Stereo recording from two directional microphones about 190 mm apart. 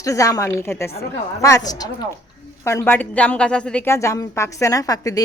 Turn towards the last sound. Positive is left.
turn(degrees=20)  # may be behind; listen again after turning